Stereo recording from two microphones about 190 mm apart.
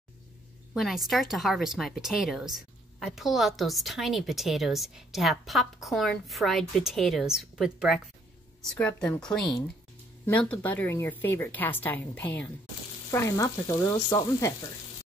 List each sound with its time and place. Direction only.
0.7 s speech: centre (ahead or behind)
13.1 s frying: 15° left (ahead or behind)